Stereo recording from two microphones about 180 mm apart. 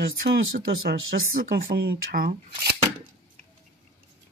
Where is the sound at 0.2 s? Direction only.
60° right (ahead or behind).